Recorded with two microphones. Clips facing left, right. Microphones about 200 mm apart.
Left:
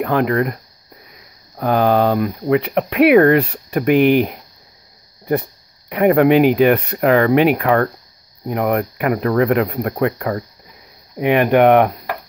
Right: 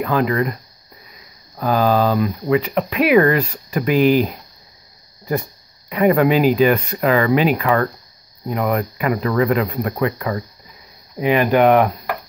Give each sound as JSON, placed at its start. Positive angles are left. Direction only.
{"t": 0.0, "sound": "speech", "side_deg": 60}
{"t": 1.6, "sound": "speech", "side_deg": 60}